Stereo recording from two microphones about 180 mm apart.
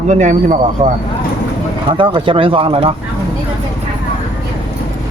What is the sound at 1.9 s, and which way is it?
Speech, 30° right (ahead or behind).